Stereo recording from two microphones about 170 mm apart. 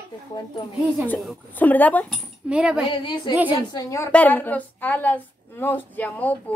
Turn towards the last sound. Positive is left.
turn(degrees=10)  # may be behind; listen again after turning